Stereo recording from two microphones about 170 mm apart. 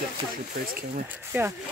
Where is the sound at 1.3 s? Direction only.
10° right (ahead or behind).